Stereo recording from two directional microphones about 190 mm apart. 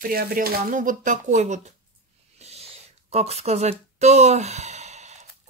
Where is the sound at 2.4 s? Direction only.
35° right (ahead or behind).